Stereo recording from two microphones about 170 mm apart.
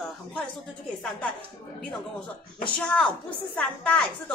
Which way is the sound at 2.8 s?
5° left (ahead or behind).